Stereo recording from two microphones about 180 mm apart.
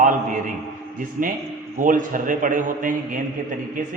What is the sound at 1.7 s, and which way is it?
A man's voice, 45° right (ahead or behind).